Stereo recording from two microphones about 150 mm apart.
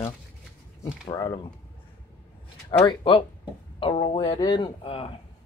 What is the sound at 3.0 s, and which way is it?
Speech, 35° left (ahead or behind).